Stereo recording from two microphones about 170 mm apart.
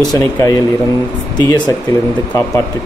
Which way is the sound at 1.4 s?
25° left (ahead or behind).